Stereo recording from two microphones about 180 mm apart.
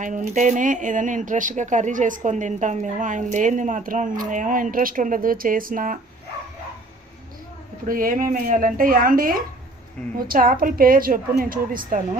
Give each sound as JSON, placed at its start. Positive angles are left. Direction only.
{"t": 0.0, "sound": "speech", "side_deg": -45}
{"t": 7.9, "sound": "speech", "side_deg": -50}